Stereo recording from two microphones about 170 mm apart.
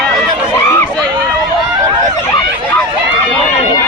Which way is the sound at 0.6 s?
15° left (ahead or behind).